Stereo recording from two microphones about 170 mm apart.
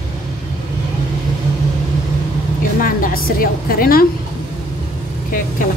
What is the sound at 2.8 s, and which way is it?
A woman's voice, 60° left (ahead or behind).